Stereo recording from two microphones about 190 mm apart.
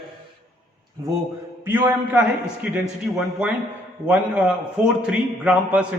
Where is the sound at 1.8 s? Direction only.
10° right (ahead or behind).